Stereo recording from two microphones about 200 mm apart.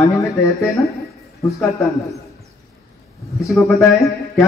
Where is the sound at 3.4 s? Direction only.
15° left (ahead or behind).